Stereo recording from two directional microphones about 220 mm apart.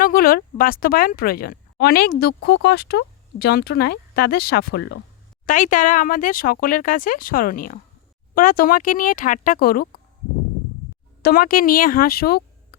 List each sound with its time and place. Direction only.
0.0 s speech: 40° left (ahead or behind)
5.5 s speech: 35° left (ahead or behind)
11.2 s speech: 45° left (ahead or behind)